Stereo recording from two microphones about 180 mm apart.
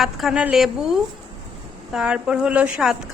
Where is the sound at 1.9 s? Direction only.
5° right (ahead or behind).